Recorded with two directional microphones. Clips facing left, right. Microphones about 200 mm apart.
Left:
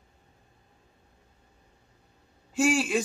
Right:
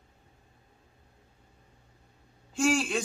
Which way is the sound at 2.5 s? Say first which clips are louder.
Left 2 dB; 5° left (ahead or behind).